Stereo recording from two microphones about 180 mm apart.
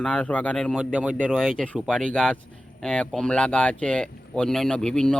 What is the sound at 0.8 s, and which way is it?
Speech, 5° right (ahead or behind).